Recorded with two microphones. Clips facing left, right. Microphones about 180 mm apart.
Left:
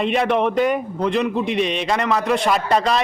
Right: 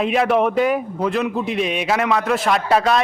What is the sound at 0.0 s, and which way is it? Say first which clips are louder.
A man's voice: right 1 dB; 5° right (ahead or behind).